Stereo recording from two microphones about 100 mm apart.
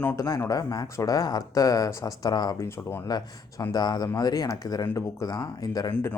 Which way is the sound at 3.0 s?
40° left (ahead or behind).